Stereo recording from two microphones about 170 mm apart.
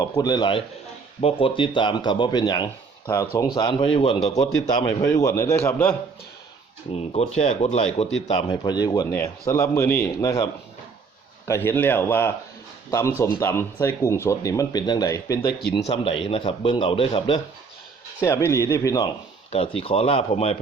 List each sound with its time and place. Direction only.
0.0 s speech: 25° left (ahead or behind)
4.6 s speech: 20° left (ahead or behind)
6.9 s a man's voice: 40° left (ahead or behind)
8.3 s speech: 25° left (ahead or behind)
15.9 s a man's voice: 30° left (ahead or behind)
18.2 s speech: 15° left (ahead or behind)
19.5 s a man's voice: 35° left (ahead or behind)